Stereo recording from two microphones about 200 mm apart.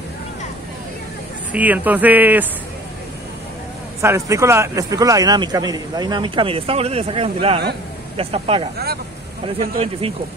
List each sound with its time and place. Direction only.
1.5 s speech: 10° right (ahead or behind)
4.0 s a man's voice: 15° right (ahead or behind)
8.7 s speech: 50° right (ahead or behind)
9.6 s a man's voice: 30° right (ahead or behind)